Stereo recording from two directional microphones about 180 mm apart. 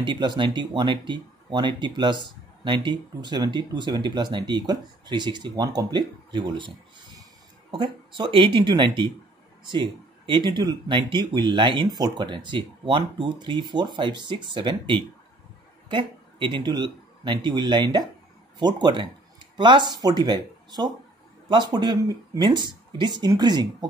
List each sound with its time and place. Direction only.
0.0 s speech: 25° right (ahead or behind)
7.7 s speech: 25° right (ahead or behind)